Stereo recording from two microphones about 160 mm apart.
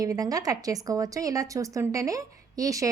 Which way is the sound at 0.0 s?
20° right (ahead or behind).